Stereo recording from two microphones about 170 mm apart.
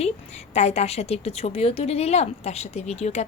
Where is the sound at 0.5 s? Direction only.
40° left (ahead or behind).